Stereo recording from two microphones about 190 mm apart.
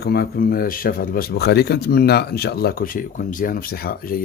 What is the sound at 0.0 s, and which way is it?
Speech, 55° left (ahead or behind).